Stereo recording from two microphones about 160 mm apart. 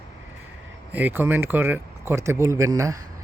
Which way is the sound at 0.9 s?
10° right (ahead or behind).